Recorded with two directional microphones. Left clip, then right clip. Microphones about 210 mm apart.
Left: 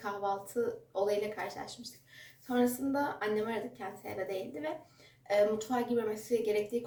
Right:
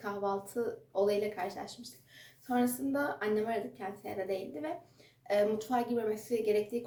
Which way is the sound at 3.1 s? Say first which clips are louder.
Right 1 dB; 5° right (ahead or behind).